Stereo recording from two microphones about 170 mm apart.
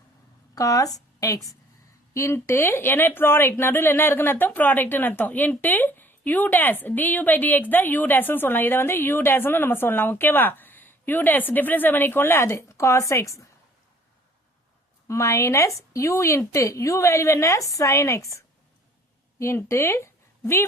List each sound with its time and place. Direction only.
0.5 s a woman's voice: 20° left (ahead or behind)
15.0 s speech: 15° left (ahead or behind)